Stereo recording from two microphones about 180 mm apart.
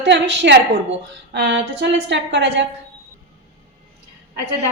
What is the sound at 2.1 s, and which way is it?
Speech, 80° right.